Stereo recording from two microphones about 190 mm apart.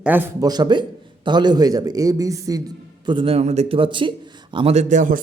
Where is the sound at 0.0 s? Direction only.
10° right (ahead or behind).